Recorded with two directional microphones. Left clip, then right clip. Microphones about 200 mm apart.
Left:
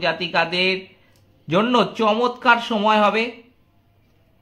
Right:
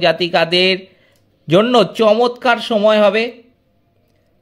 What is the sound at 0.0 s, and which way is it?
Speech, 40° right (ahead or behind).